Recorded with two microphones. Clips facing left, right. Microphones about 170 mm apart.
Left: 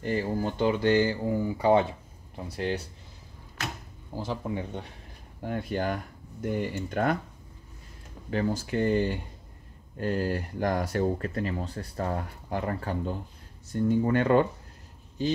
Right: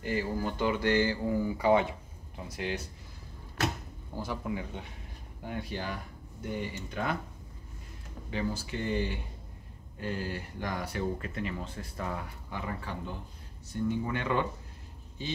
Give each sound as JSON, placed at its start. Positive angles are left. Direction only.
{"t": 0.0, "sound": "speech", "side_deg": 30}
{"t": 4.2, "sound": "speech", "side_deg": 20}
{"t": 4.5, "sound": "speech", "side_deg": 35}
{"t": 5.4, "sound": "speech", "side_deg": 50}
{"t": 8.3, "sound": "speech", "side_deg": 50}